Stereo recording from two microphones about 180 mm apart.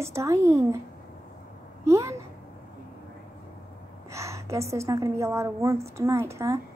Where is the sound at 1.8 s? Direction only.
15° right (ahead or behind).